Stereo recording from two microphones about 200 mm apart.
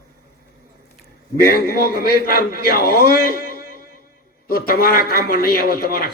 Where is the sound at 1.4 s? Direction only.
50° left (ahead or behind).